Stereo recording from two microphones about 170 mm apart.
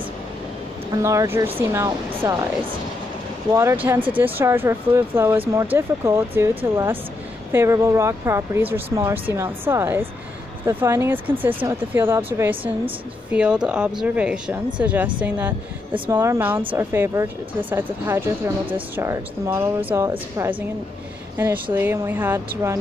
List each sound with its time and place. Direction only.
1.0 s speech: 15° right (ahead or behind)
3.5 s speech: 10° right (ahead or behind)
21.7 s speech: 15° right (ahead or behind)